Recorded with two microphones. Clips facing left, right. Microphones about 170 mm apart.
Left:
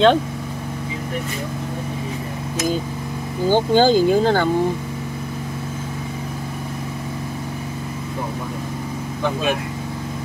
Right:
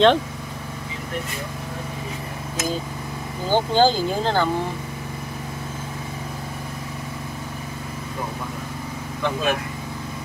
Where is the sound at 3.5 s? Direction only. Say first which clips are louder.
Left 3 dB; 15° left (ahead or behind).